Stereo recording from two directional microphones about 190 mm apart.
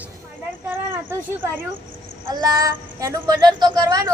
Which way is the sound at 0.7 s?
10° right (ahead or behind).